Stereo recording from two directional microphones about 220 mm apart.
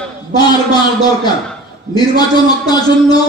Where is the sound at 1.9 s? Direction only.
20° left (ahead or behind).